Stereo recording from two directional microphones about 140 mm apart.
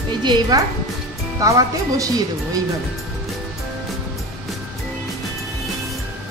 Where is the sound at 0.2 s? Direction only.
30° right (ahead or behind).